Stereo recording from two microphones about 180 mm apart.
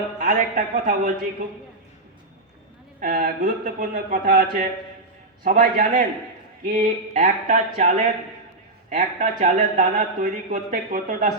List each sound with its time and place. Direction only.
0.2 s speech: 45° right (ahead or behind)
3.0 s speech: 50° right (ahead or behind)
3.9 s speech: 55° right (ahead or behind)